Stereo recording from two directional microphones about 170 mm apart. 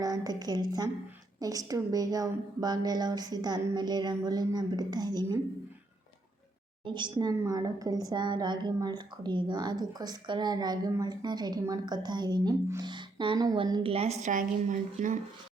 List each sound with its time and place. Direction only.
0.0 s a woman's voice: 20° right (ahead or behind)
6.8 s a woman's voice: 25° right (ahead or behind); by 15.2 s 45° right (ahead or behind)